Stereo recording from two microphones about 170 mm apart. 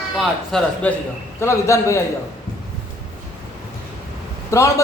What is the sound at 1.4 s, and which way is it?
Speech, 15° left (ahead or behind).